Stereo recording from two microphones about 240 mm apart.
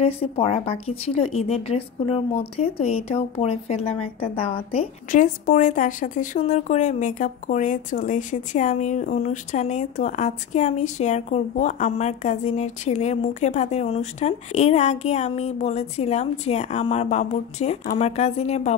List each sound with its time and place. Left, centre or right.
0.0 s speech: left